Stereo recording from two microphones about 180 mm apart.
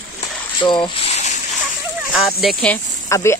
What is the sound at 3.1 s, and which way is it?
Speech, 15° left (ahead or behind).